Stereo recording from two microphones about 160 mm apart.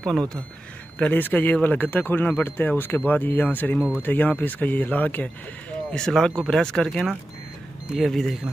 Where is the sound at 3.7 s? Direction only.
10° right (ahead or behind).